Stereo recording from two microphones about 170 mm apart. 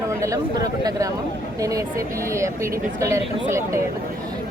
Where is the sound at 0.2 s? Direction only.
20° right (ahead or behind).